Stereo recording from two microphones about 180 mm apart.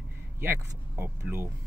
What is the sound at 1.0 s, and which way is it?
Speech, 15° right (ahead or behind).